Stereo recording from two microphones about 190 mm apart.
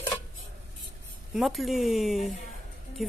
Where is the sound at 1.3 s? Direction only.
Centre (ahead or behind).